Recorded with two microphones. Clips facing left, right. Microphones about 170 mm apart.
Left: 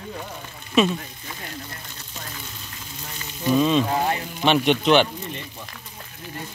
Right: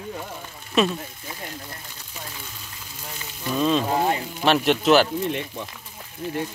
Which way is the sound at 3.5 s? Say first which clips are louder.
Left 2 dB; centre (ahead or behind).